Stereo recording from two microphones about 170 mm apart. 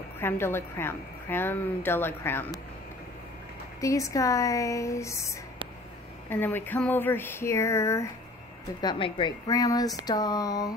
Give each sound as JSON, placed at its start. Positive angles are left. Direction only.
{"t": 0.2, "sound": "a woman's voice", "side_deg": 15}
{"t": 3.8, "sound": "speech", "side_deg": 20}
{"t": 6.2, "sound": "a woman's voice", "side_deg": 10}
{"t": 8.8, "sound": "speech", "side_deg": 30}